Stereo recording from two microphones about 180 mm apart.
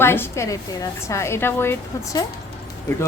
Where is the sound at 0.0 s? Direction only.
15° left (ahead or behind).